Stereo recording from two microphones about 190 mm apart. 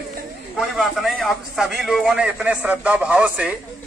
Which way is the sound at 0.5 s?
Centre (ahead or behind).